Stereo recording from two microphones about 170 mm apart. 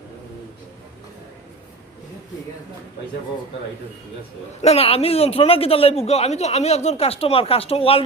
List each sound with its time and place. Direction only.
4.6 s a man's voice: 35° left (ahead or behind)